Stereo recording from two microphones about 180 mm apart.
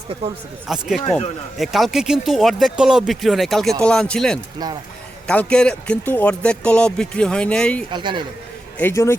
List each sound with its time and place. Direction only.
0.7 s speech: centre (ahead or behind)
7.9 s speech: 25° right (ahead or behind)
8.8 s a man's voice: 15° left (ahead or behind)